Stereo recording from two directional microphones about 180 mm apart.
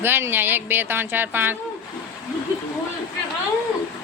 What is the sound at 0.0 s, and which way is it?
A woman's voice, 10° right (ahead or behind).